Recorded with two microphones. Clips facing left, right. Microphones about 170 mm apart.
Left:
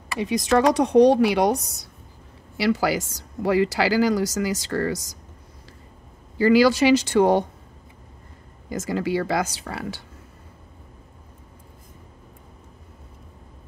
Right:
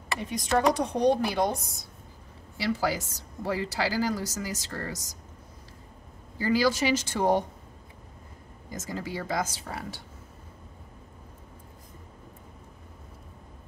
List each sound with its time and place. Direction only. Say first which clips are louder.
0.2 s a woman's voice: left 6 dB; 85° left
6.3 s speech: left 8 dB; 75° left (ahead or behind)
8.6 s speech: left 10 dB; 75° left (ahead or behind)